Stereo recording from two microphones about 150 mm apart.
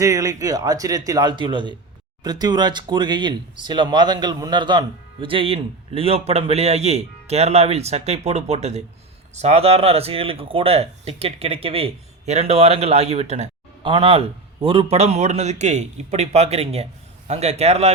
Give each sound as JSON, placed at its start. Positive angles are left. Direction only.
{"t": 0.0, "sound": "speech", "side_deg": -20}
{"t": 13.8, "sound": "a man's voice", "side_deg": -35}